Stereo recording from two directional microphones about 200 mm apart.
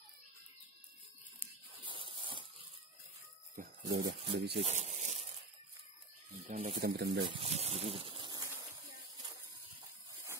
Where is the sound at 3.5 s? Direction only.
50° right (ahead or behind).